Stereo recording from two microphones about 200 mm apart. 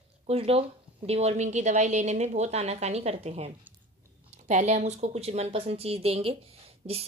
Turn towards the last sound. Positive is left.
turn(degrees=-30)  # may be behind; listen again after turning